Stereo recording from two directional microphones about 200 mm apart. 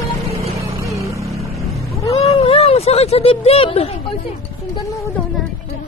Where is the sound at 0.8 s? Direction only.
15° right (ahead or behind).